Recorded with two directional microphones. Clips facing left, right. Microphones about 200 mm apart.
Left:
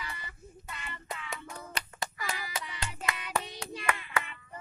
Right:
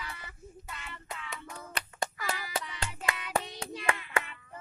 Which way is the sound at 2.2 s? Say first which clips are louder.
Right 2 dB; 5° right (ahead or behind).